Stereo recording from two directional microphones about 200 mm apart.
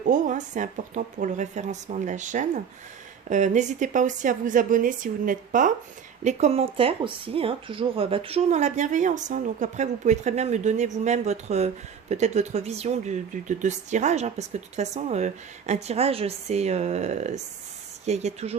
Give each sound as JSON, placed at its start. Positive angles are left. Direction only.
{"t": 0.1, "sound": "speech", "side_deg": -40}